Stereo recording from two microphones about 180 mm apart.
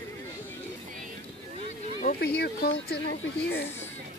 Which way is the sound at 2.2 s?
65° left (ahead or behind).